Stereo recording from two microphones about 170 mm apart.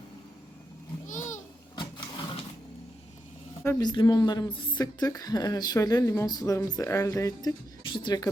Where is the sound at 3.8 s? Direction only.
25° left (ahead or behind).